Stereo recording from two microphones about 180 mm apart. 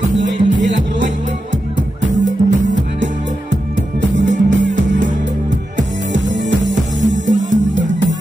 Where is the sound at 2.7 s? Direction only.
80° right.